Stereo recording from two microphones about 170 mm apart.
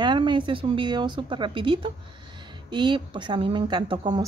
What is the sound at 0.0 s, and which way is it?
A woman's voice, 30° right (ahead or behind).